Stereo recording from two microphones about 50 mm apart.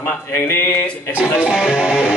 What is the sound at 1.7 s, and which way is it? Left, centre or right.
Music, centre.